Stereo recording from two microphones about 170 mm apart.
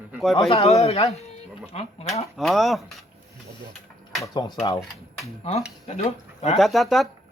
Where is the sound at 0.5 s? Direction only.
35° left (ahead or behind).